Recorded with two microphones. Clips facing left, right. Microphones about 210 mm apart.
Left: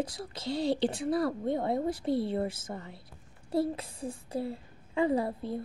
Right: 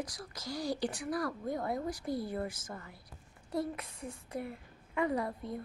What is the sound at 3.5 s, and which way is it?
A child's voice, 30° left (ahead or behind).